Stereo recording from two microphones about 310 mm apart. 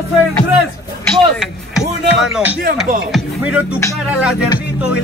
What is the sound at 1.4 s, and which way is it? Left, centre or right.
Music, centre.